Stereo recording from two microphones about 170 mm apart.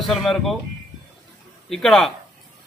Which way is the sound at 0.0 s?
Centre (ahead or behind).